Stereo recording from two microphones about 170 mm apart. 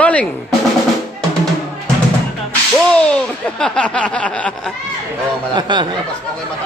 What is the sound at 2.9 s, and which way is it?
Speech, 5° left (ahead or behind).